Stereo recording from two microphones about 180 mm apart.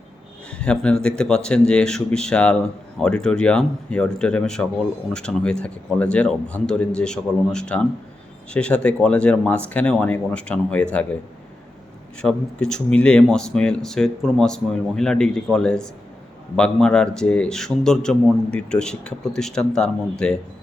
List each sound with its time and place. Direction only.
0.6 s a man's voice: 5° left (ahead or behind)
12.2 s a man's voice: 5° left (ahead or behind)